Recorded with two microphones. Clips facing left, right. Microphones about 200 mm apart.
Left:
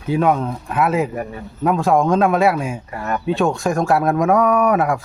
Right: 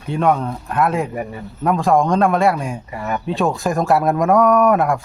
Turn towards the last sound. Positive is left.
turn(degrees=0)  # may be behind; listen again after turning